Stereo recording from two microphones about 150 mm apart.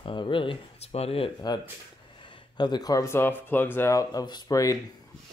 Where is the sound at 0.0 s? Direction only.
35° left (ahead or behind).